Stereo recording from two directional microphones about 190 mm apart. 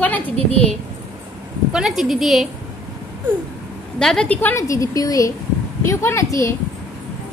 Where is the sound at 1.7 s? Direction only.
5° right (ahead or behind).